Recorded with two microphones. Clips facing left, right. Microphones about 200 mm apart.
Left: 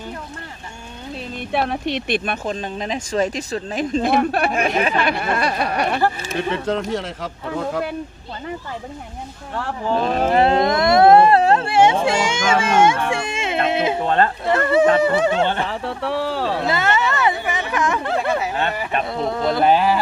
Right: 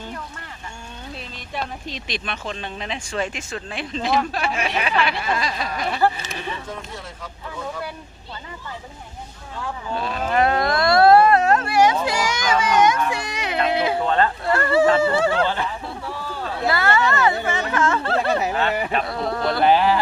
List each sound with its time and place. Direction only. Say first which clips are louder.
1.5 s speech: left 9 dB; 75° left (ahead or behind)
6.5 s speech: left 12 dB; 80° left
9.6 s speech: left 6 dB; 85° left
9.9 s speech: left 6 dB; 35° left (ahead or behind); by 15.5 s 20° left (ahead or behind)
15.6 s a sound: left 5 dB; 90° left
16.6 s a sound: right 4 dB; 20° left (ahead or behind)
19.0 s speech: left 2 dB; 20° left (ahead or behind)